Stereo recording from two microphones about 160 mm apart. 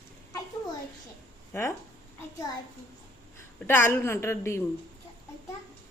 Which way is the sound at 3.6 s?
15° left (ahead or behind).